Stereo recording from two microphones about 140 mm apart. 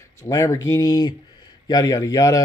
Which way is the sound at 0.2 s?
20° left (ahead or behind).